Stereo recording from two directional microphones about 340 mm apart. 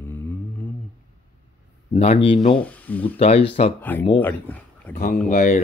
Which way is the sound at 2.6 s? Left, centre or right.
Centre.